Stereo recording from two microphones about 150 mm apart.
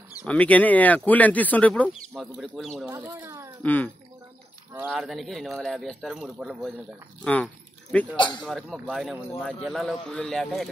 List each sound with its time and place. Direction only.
0.2 s speech: 10° left (ahead or behind)
2.9 s a child's voice: 20° right (ahead or behind)
3.6 s speech: 10° left (ahead or behind)
4.8 s speech: centre (ahead or behind)
7.4 s keys jangling: 10° left (ahead or behind)
8.4 s speech: centre (ahead or behind)